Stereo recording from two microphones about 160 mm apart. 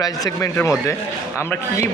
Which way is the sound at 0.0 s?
20° left (ahead or behind).